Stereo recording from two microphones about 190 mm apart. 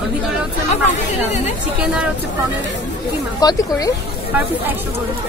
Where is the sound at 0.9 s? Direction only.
35° left (ahead or behind).